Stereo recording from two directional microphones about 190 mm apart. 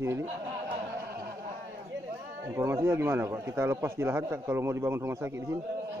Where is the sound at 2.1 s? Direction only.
15° right (ahead or behind).